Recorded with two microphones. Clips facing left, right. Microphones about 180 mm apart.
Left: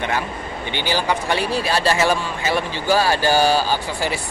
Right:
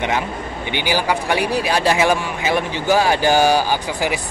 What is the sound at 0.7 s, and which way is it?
A man's voice, 15° right (ahead or behind).